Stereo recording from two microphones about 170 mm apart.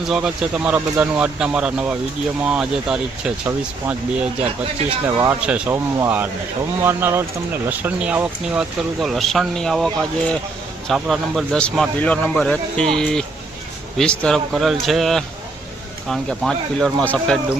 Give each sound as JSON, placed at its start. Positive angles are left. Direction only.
{"t": 0.1, "sound": "speech", "side_deg": -5}